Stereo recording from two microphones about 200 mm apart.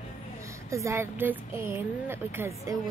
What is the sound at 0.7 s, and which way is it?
Speech, 15° right (ahead or behind).